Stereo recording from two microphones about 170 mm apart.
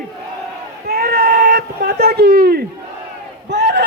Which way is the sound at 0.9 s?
65° right (ahead or behind).